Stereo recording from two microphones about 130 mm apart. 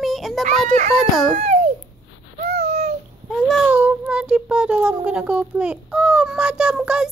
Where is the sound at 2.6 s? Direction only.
55° right (ahead or behind).